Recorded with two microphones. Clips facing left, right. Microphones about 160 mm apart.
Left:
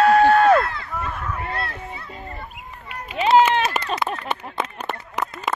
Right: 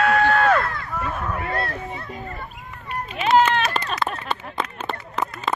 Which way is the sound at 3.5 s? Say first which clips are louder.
Left 1 dB; 25° left (ahead or behind).